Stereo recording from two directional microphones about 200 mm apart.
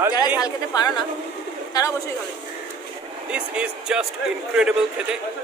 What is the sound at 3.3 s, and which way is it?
Speech, 5° right (ahead or behind).